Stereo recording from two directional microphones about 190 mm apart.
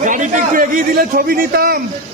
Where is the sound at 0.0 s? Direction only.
45° right (ahead or behind).